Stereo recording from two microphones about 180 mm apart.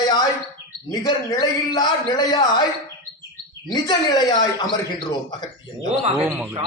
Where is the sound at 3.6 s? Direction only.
25° left (ahead or behind).